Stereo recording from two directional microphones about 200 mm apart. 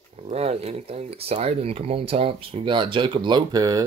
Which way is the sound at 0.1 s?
30° right (ahead or behind).